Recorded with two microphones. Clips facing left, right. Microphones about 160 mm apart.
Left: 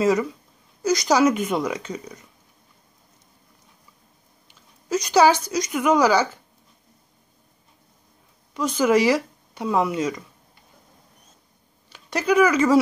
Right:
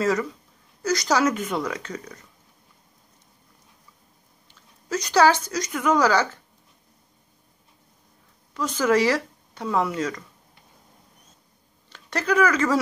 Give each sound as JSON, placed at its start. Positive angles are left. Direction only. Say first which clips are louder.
{"t": 0.0, "sound": "speech", "louder": "left 3 dB", "side_deg": 15}
{"t": 4.5, "sound": "speech", "louder": "left 4 dB", "side_deg": 15}
{"t": 8.5, "sound": "speech", "louder": "left 2 dB", "side_deg": 15}
{"t": 11.9, "sound": "speech", "louder": "left 3 dB", "side_deg": 10}